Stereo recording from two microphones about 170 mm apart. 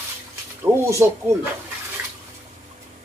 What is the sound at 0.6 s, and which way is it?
Speech, 15° right (ahead or behind).